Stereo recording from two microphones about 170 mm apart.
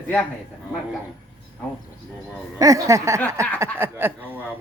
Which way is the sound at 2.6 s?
20° right (ahead or behind).